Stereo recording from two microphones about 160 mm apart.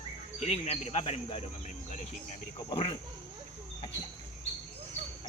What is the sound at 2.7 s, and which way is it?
Speech, 35° left (ahead or behind).